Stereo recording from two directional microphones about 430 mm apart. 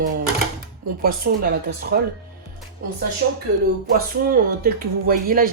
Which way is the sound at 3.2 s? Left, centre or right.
Right.